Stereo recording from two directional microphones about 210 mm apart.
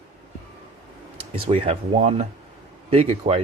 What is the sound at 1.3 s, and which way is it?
Speech, 25° right (ahead or behind).